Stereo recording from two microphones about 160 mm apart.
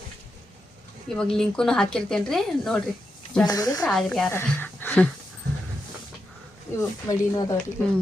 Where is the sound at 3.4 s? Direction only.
25° left (ahead or behind).